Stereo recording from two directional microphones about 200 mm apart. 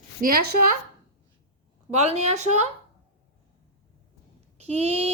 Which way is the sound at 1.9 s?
35° right (ahead or behind).